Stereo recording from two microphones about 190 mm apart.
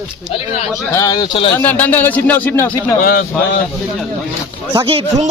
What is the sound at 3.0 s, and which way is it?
Speech, 50° left (ahead or behind).